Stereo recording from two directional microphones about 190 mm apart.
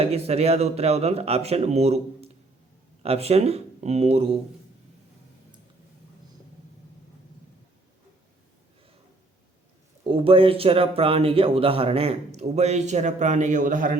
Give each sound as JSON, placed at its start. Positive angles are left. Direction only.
{"t": 0.0, "sound": "speech", "side_deg": -35}
{"t": 10.0, "sound": "speech", "side_deg": -30}